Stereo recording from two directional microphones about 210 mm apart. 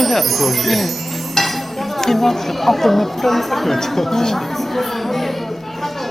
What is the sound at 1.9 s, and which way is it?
Speech, centre (ahead or behind).